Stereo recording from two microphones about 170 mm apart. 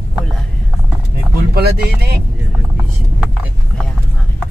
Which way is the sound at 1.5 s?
70° right (ahead or behind).